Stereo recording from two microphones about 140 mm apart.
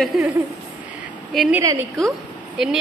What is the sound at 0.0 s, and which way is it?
Speech, centre (ahead or behind).